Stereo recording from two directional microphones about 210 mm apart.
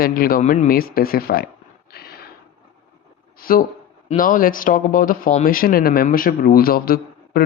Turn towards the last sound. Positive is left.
turn(degrees=45)  # may be behind; listen again after turning